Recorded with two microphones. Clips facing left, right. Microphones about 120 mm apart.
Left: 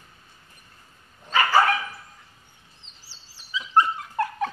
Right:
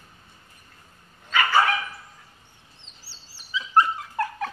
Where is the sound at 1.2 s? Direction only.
35° left (ahead or behind).